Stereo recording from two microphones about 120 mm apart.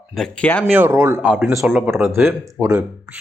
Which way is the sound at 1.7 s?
20° right (ahead or behind).